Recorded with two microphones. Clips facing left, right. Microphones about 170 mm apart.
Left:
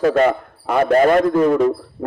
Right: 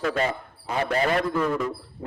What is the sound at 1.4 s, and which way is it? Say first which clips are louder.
Speech: left 11 dB; 60° left (ahead or behind).